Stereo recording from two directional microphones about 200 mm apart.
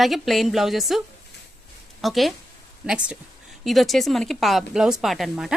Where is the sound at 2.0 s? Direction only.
Centre (ahead or behind).